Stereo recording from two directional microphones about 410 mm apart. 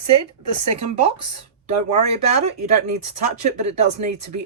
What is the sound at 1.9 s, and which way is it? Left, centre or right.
Speech, centre.